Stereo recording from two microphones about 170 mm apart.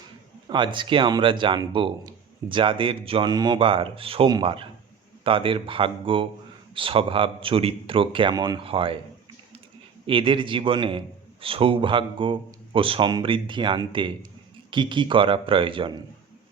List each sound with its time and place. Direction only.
0.4 s speech: 30° right (ahead or behind)
10.1 s speech: 30° right (ahead or behind)